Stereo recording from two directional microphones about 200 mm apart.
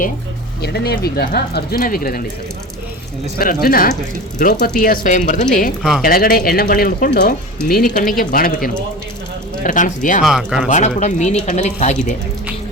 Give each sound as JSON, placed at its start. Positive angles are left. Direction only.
{"t": 0.6, "sound": "speech", "side_deg": 55}
{"t": 3.3, "sound": "speech", "side_deg": 45}
{"t": 10.2, "sound": "speech", "side_deg": 0}
{"t": 10.7, "sound": "speech", "side_deg": 35}